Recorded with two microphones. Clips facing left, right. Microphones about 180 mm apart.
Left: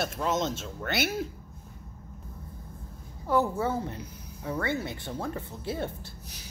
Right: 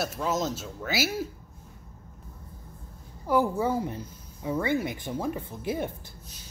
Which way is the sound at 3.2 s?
10° right (ahead or behind).